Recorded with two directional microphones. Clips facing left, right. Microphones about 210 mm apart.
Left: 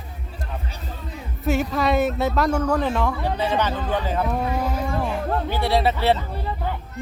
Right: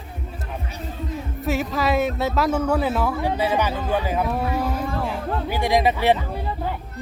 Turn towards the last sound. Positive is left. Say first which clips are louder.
# right 1 dB
turn(degrees=-15)  # may be behind; listen again after turning